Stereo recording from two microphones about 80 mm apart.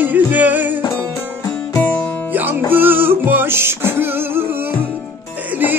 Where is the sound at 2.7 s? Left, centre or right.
Right.